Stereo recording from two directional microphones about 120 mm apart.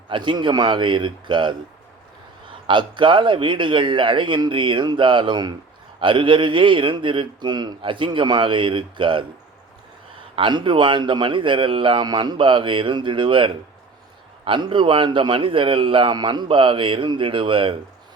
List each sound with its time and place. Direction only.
0.1 s a man's voice: 40° right (ahead or behind)
2.6 s a man's voice: 45° right (ahead or behind)
10.3 s a man's voice: 45° right (ahead or behind)